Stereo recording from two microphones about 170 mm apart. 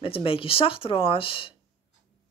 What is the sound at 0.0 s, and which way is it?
Speech, 30° left (ahead or behind).